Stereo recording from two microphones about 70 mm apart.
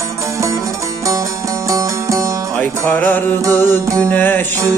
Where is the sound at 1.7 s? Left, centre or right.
Right.